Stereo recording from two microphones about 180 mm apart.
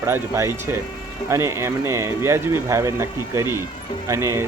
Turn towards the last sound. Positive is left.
turn(degrees=-15)  # may be behind; listen again after turning